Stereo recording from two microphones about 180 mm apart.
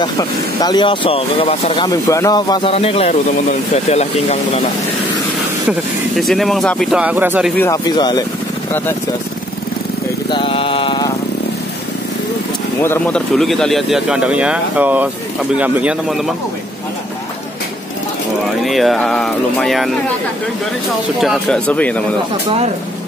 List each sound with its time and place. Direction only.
0.0 s speech: 20° left (ahead or behind)
1.9 s speech: 20° left (ahead or behind); by 4.4 s 35° left (ahead or behind)
5.7 s speech: centre (ahead or behind)
7.5 s speech: 15° left (ahead or behind)
10.3 s a sound: 30° left (ahead or behind)
12.8 s speech: 10° left (ahead or behind); by 16.2 s 5° right (ahead or behind)
18.6 s speech: centre (ahead or behind)
21.2 s speech: centre (ahead or behind)